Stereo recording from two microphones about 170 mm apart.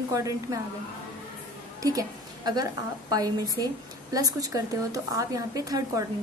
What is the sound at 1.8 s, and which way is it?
A woman's voice, 20° right (ahead or behind).